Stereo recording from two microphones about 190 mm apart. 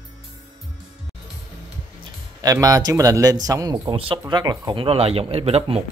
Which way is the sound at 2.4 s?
20° right (ahead or behind).